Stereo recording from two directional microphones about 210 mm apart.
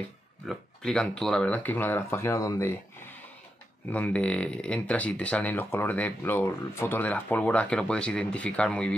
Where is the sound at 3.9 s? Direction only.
5° left (ahead or behind).